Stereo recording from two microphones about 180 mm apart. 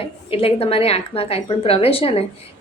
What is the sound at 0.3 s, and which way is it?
A woman's voice, 30° left (ahead or behind).